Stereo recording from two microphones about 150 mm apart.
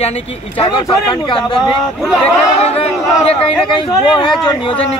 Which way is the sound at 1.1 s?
30° left (ahead or behind).